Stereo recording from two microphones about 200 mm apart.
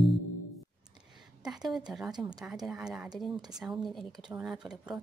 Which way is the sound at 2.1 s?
20° right (ahead or behind).